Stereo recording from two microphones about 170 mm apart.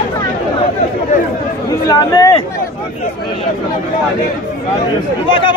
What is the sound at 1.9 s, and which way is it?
Speech, 20° left (ahead or behind).